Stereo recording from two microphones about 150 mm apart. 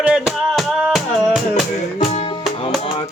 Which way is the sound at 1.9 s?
50° left (ahead or behind).